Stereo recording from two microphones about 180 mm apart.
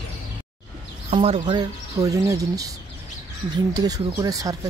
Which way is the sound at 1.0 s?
30° right (ahead or behind).